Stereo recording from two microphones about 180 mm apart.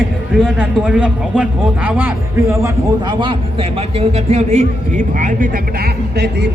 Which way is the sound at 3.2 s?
30° right (ahead or behind).